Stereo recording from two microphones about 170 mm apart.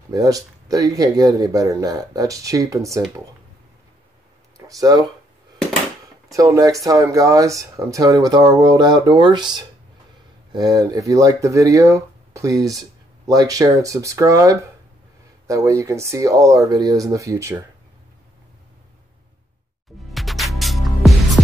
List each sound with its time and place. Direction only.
0.1 s speech: 20° right (ahead or behind)
4.6 s speech: 20° right (ahead or behind)
6.3 s speech: 20° right (ahead or behind)
20.1 s music: centre (ahead or behind)